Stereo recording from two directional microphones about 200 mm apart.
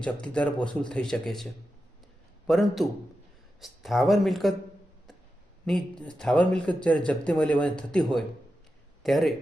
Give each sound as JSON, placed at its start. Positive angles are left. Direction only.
{"t": 0.0, "sound": "speech", "side_deg": 5}
{"t": 2.5, "sound": "speech", "side_deg": 0}
{"t": 5.6, "sound": "speech", "side_deg": 5}